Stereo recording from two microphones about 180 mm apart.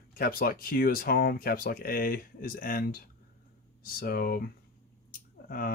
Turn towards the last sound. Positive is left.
turn(degrees=55)  # may be behind; listen again after turning